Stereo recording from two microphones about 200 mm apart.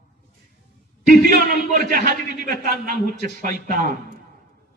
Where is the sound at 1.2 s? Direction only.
45° right (ahead or behind).